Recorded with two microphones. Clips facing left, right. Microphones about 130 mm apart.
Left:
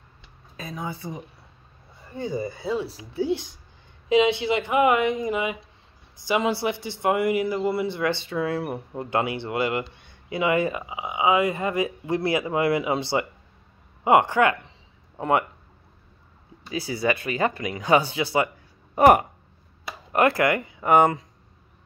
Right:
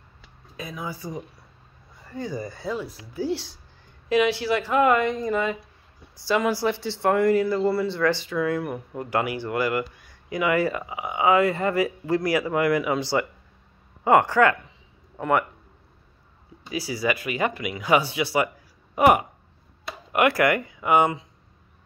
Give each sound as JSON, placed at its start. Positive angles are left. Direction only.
{"t": 0.6, "sound": "speech", "side_deg": 30}
{"t": 2.0, "sound": "a sound", "side_deg": 20}
{"t": 2.7, "sound": "speech", "side_deg": 30}
{"t": 16.7, "sound": "speech", "side_deg": 30}
{"t": 18.9, "sound": "speech", "side_deg": 40}
{"t": 20.1, "sound": "a sound", "side_deg": 35}
{"t": 20.3, "sound": "speech", "side_deg": 25}
{"t": 20.8, "sound": "speech", "side_deg": 45}